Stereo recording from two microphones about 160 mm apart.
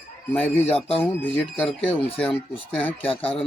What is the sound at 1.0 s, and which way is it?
Speech, 10° left (ahead or behind).